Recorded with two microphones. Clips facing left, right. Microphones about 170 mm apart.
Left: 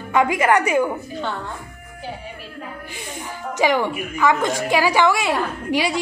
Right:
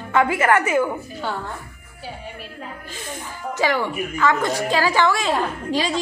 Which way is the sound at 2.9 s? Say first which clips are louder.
Even; 15° left (ahead or behind).